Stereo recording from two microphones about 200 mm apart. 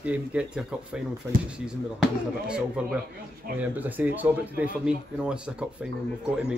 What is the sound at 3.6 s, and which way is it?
Speech, 10° right (ahead or behind).